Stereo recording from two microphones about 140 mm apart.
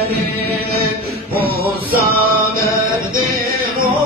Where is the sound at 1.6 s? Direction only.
90° right.